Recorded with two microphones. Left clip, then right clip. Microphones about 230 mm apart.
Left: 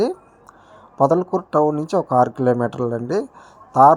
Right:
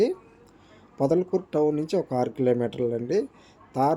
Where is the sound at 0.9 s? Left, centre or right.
Centre.